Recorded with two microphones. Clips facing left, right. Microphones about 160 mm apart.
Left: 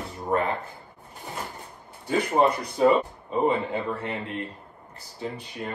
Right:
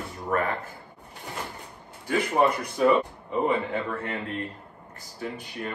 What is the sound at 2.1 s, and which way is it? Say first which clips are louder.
A man's voice: left 1 dB; 25° left (ahead or behind).